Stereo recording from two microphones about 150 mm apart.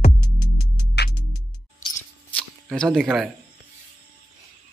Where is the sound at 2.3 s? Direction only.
5° left (ahead or behind).